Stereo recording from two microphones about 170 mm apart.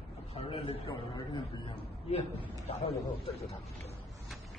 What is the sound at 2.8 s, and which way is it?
Speech, 35° left (ahead or behind).